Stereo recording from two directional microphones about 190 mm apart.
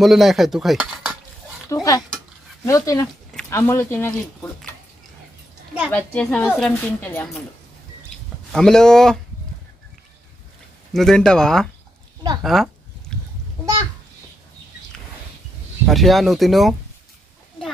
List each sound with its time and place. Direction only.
0.0 s a woman's voice: centre (ahead or behind)
1.7 s speech: 20° left (ahead or behind)
5.9 s a woman's voice: 5° left (ahead or behind)
8.5 s a woman's voice: 5° left (ahead or behind)
10.9 s a woman's voice: centre (ahead or behind)
13.1 s a sound: 5° left (ahead or behind)
15.9 s a woman's voice: centre (ahead or behind)